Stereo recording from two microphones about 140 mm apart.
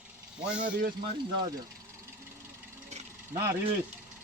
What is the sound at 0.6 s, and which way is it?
Speech, 85° right.